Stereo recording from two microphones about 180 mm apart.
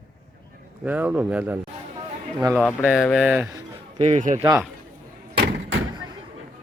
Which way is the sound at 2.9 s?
Centre (ahead or behind).